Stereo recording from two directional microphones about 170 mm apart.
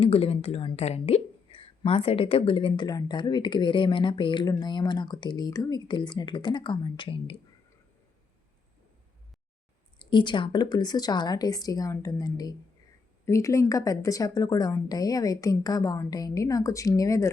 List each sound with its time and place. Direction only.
0.0 s a woman's voice: 35° left (ahead or behind)
10.0 s a woman's voice: 30° left (ahead or behind)